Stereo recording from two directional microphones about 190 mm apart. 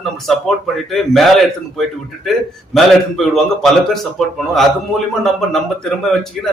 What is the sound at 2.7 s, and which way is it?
A man's voice, centre (ahead or behind).